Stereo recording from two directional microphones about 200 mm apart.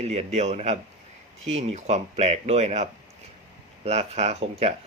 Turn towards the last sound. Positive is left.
turn(degrees=-35)  # may be behind; listen again after turning